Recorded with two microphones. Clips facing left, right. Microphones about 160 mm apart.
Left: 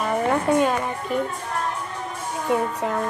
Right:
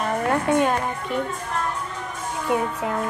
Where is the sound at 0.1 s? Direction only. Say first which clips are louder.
Left 1 dB; centre (ahead or behind).